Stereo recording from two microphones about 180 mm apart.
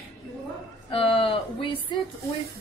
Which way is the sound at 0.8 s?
30° left (ahead or behind).